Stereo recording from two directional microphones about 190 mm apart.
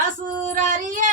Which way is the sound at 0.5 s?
45° right (ahead or behind).